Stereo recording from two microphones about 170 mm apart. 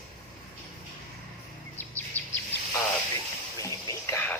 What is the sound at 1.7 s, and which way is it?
Bird vocalization, 10° left (ahead or behind).